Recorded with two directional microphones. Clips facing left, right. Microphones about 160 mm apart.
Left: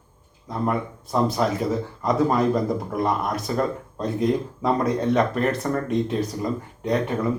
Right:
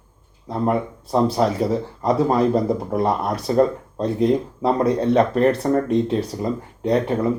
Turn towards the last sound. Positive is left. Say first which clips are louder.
# right 4 dB
turn(degrees=-30)  # may be behind; listen again after turning